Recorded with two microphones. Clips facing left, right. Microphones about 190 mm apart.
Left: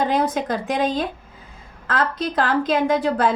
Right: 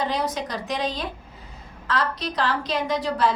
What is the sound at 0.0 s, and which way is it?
A woman's voice, 50° left (ahead or behind).